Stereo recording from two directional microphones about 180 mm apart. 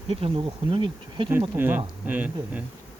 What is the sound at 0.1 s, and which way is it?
Bee, 30° right (ahead or behind).